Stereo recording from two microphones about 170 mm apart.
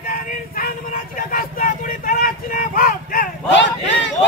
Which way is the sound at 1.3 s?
55° left (ahead or behind).